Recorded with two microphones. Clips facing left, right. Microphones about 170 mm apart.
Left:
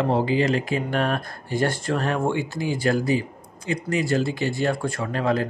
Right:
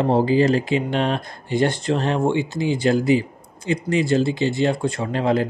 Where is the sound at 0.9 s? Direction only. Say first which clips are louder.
Right 2 dB; 20° right (ahead or behind).